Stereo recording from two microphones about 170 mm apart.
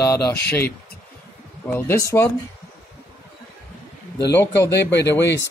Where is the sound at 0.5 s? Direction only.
15° left (ahead or behind).